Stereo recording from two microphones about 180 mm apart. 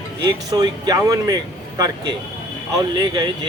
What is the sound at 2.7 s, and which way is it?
Speech, 20° right (ahead or behind).